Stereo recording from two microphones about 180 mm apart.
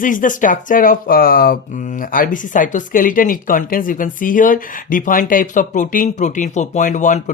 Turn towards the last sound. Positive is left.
turn(degrees=45)  # may be behind; listen again after turning